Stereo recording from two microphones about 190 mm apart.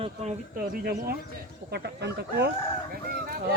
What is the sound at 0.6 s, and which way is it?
Speech, 50° right (ahead or behind).